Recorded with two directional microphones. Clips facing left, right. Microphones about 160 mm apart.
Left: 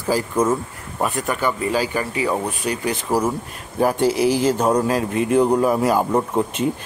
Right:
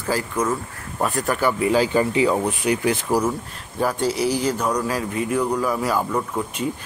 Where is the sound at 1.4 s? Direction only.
15° right (ahead or behind).